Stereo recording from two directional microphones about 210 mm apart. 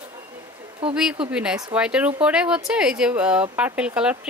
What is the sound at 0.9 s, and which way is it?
A woman's voice, 5° right (ahead or behind).